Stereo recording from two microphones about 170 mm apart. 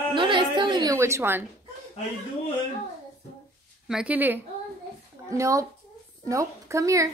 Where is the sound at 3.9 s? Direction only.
5° right (ahead or behind).